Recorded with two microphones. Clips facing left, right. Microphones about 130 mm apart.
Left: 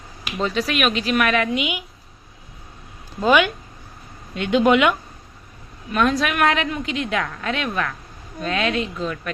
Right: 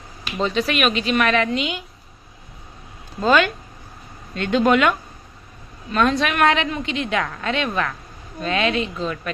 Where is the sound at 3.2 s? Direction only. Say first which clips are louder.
Even; 10° left (ahead or behind).